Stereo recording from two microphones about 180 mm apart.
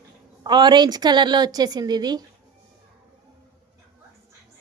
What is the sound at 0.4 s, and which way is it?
Speech, 25° right (ahead or behind).